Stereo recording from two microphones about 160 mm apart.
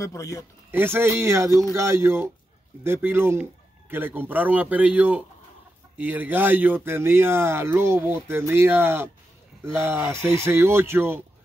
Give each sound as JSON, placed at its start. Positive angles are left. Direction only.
{"t": 0.0, "sound": "speech", "side_deg": 20}
{"t": 0.7, "sound": "speech", "side_deg": -15}